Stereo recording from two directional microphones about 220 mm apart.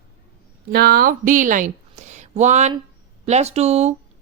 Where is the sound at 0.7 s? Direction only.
45° right (ahead or behind).